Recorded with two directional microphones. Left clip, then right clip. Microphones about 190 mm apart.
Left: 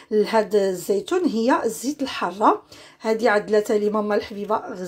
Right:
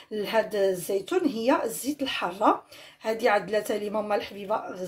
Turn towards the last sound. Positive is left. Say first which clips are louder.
# left 5 dB
turn(degrees=30)  # may be behind; listen again after turning